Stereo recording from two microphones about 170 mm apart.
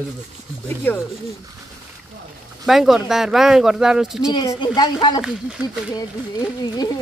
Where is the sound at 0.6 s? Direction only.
10° left (ahead or behind).